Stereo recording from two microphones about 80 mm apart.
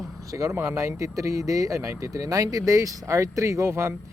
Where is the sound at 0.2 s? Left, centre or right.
Right.